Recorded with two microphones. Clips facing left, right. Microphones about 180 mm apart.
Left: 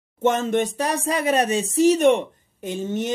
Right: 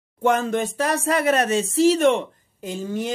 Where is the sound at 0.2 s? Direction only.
20° left (ahead or behind).